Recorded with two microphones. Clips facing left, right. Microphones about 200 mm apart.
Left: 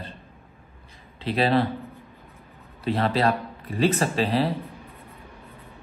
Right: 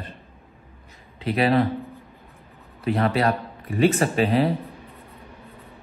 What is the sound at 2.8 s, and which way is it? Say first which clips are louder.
Speech: right 1 dB; 30° left (ahead or behind).